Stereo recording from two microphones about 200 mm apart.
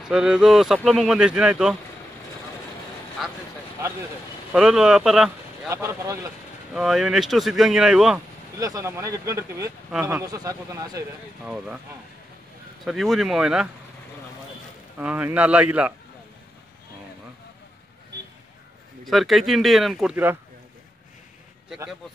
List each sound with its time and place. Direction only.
0.0 s speech: 5° right (ahead or behind)
3.2 s speech: centre (ahead or behind)
4.5 s speech: centre (ahead or behind)
5.7 s a man's voice: 15° right (ahead or behind)
6.7 s speech: centre (ahead or behind)
8.5 s a man's voice: 15° right (ahead or behind)
11.4 s speech: 5° right (ahead or behind)
12.8 s speech: centre (ahead or behind)
15.0 s a man's voice: 10° right (ahead or behind)
19.0 s speech: centre (ahead or behind)
21.6 s a man's voice: 5° right (ahead or behind)